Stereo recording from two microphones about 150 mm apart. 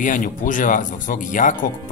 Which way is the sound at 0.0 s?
60° left (ahead or behind).